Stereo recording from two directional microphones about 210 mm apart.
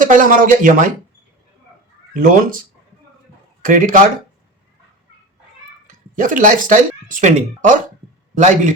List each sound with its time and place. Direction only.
0.0 s speech: 40° right (ahead or behind)
2.1 s speech: 40° right (ahead or behind)
3.6 s speech: 40° right (ahead or behind)
5.9 s speech: 40° right (ahead or behind)